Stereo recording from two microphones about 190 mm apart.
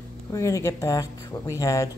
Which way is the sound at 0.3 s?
15° left (ahead or behind).